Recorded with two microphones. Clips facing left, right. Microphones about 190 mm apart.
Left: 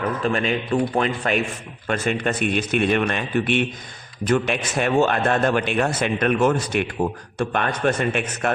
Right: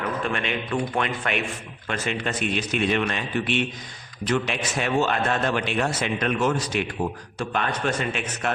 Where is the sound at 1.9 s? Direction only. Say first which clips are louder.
Left 5 dB; 50° left (ahead or behind).